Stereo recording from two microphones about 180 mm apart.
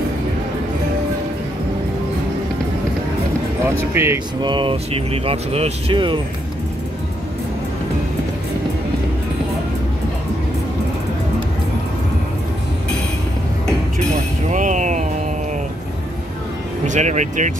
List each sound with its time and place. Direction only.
3.6 s speech: 15° right (ahead or behind)
4.4 s speech: 25° right (ahead or behind)
14.1 s music: 45° right (ahead or behind)
16.8 s speech: 40° right (ahead or behind)